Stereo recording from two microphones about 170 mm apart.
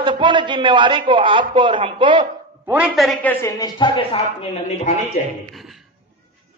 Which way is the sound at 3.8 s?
30° left (ahead or behind).